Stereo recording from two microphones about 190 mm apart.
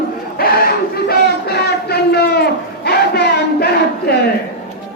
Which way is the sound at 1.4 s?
60° left (ahead or behind).